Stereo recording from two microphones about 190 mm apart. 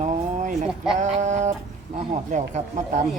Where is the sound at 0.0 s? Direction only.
40° right (ahead or behind).